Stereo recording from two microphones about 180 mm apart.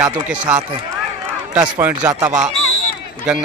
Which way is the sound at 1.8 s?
15° right (ahead or behind).